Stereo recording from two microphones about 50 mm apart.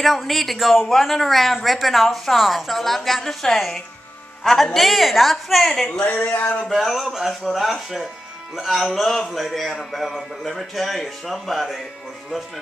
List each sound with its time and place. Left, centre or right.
0.2 s a man's voice: centre
5.9 s speech: left
6.6 s speech: centre